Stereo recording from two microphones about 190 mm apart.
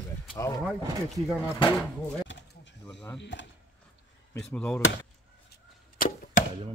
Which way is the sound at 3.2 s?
70° left (ahead or behind).